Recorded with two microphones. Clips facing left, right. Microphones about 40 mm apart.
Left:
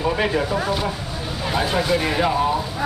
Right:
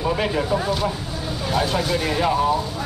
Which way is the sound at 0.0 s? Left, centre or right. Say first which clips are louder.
Left 1 dB; centre.